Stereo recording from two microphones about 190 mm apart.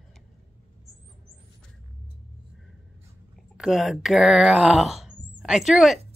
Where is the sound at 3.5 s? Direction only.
Centre (ahead or behind).